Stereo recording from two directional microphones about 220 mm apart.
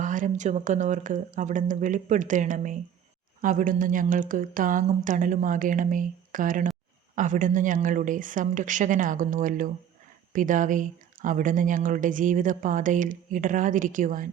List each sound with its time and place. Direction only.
0.0 s speech: 35° right (ahead or behind)